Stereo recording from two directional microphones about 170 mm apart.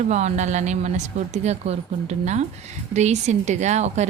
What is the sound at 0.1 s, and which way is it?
Speech, 45° right (ahead or behind).